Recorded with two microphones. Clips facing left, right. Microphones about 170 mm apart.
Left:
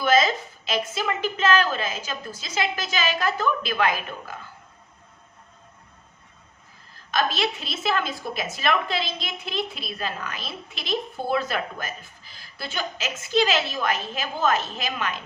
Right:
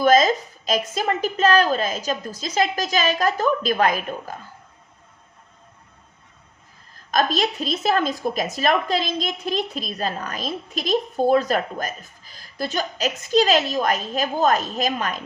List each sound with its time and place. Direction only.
0.0 s a woman's voice: 40° right (ahead or behind)
7.1 s a woman's voice: 40° right (ahead or behind)